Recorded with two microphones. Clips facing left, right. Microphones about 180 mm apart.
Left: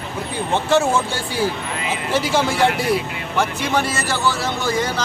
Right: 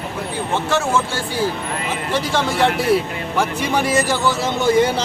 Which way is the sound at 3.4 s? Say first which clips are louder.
Even; 10° right (ahead or behind).